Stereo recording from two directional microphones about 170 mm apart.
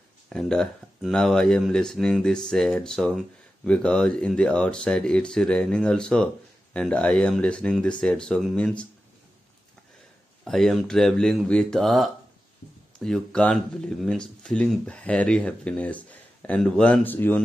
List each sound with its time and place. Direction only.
0.3 s speech: 5° left (ahead or behind)
10.4 s speech: centre (ahead or behind)